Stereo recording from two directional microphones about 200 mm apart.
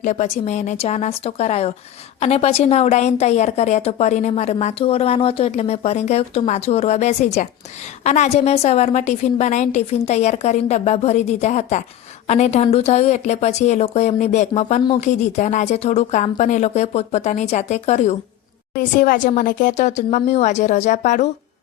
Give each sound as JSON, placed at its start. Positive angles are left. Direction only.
{"t": 0.0, "sound": "a woman's voice", "side_deg": 35}